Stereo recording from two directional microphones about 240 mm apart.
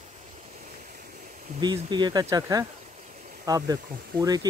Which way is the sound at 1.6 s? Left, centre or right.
Centre.